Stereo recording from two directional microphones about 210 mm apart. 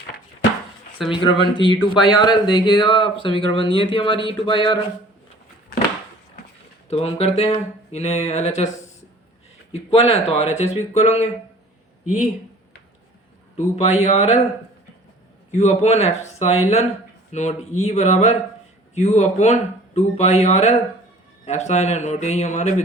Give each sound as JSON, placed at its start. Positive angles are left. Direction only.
{"t": 1.1, "sound": "speech", "side_deg": 25}
{"t": 6.9, "sound": "speech", "side_deg": 30}
{"t": 9.7, "sound": "speech", "side_deg": 30}
{"t": 13.6, "sound": "speech", "side_deg": 30}
{"t": 15.5, "sound": "speech", "side_deg": 30}